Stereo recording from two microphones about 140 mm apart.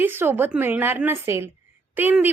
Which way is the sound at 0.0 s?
15° right (ahead or behind).